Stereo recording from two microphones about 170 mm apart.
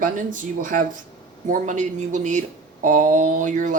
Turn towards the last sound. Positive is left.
turn(degrees=-45)  # may be behind; listen again after turning